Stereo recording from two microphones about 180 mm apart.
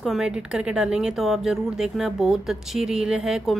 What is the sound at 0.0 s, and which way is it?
Speech, centre (ahead or behind).